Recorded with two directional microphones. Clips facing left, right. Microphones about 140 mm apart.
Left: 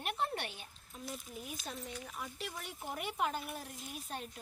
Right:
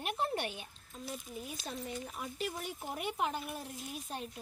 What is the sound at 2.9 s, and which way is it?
Speech, 5° right (ahead or behind).